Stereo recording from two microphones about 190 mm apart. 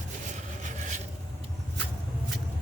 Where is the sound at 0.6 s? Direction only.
40° right (ahead or behind).